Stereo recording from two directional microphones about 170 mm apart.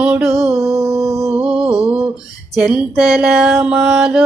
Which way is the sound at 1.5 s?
35° right (ahead or behind).